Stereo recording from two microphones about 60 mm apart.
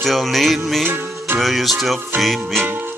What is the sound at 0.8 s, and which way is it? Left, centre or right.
Music, right.